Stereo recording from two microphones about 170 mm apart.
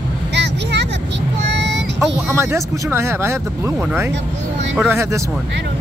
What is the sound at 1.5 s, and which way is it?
Child singing, 90° right.